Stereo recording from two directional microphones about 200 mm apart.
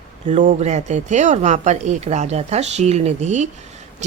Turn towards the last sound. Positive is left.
turn(degrees=-35)  # may be behind; listen again after turning